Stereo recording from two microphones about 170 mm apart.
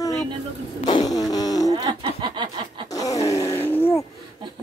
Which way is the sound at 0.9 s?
20° left (ahead or behind).